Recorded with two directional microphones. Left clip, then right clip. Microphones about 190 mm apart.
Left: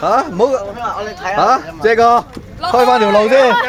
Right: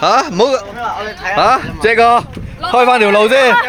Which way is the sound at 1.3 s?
25° right (ahead or behind).